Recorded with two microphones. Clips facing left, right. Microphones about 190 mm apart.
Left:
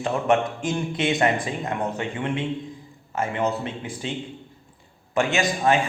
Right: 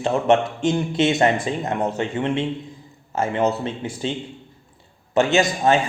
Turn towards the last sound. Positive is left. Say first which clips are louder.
# right 4 dB
turn(degrees=-30)  # may be behind; listen again after turning